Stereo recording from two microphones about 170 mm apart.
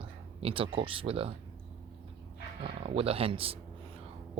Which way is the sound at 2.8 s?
35° right (ahead or behind).